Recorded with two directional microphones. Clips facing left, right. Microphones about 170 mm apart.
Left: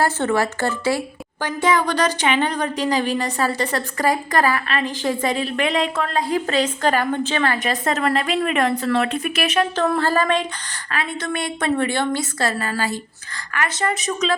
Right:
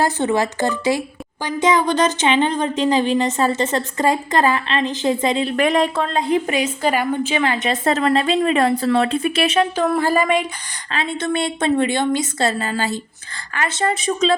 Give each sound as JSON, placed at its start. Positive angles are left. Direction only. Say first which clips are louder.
{"t": 0.0, "sound": "a woman's voice", "louder": "right 1 dB", "side_deg": -15}
{"t": 5.5, "sound": "speech", "louder": "right 6 dB", "side_deg": -45}
{"t": 6.0, "sound": "a woman's voice", "louder": "right 3 dB", "side_deg": -25}
{"t": 9.7, "sound": "speech", "louder": "right 2 dB", "side_deg": -10}
{"t": 10.9, "sound": "a woman's voice", "louder": "right 4 dB", "side_deg": -25}